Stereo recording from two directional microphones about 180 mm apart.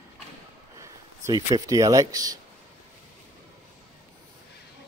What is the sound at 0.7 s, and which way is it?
Speech, 20° right (ahead or behind).